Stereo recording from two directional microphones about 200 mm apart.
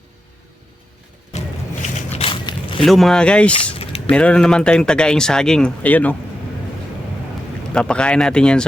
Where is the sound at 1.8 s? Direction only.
35° left (ahead or behind).